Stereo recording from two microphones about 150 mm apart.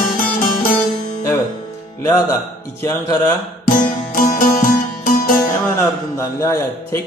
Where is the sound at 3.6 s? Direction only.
60° left (ahead or behind).